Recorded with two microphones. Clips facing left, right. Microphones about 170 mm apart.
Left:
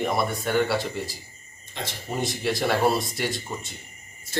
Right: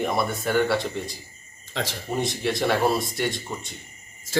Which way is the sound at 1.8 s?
90° right.